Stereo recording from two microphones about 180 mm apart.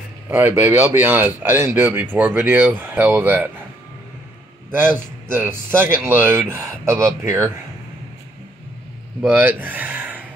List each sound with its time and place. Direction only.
0.3 s speech: 15° right (ahead or behind)
4.6 s a man's voice: 10° right (ahead or behind)
9.2 s speech: 10° right (ahead or behind)